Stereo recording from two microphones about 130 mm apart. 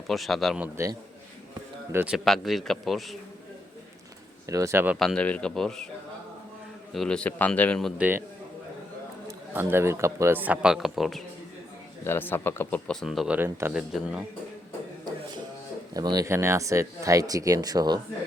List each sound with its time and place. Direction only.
0.1 s a man's voice: centre (ahead or behind)
2.0 s a man's voice: centre (ahead or behind)
4.4 s speech: 25° right (ahead or behind)
4.9 s a man's voice: 5° left (ahead or behind)
6.9 s a man's voice: 5° left (ahead or behind)
7.9 s a man's voice: 15° right (ahead or behind)
9.2 s a man's voice: 15° right (ahead or behind)
12.0 s a man's voice: 15° left (ahead or behind)
12.9 s a man's voice: centre (ahead or behind)
16.0 s speech: 30° right (ahead or behind)